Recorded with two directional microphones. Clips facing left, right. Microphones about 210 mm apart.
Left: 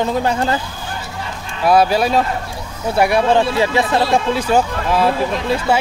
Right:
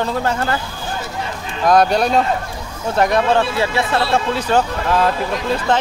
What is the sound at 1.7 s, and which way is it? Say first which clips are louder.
Speech: even; 5° left (ahead or behind).